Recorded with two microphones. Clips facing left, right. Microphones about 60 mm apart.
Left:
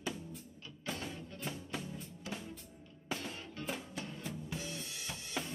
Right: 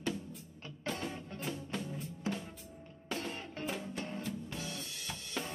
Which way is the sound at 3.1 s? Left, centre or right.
Right.